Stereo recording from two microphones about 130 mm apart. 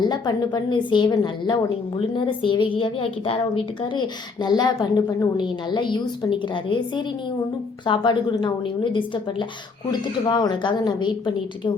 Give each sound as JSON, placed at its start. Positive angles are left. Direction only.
{"t": 0.0, "sound": "a woman's voice", "side_deg": 30}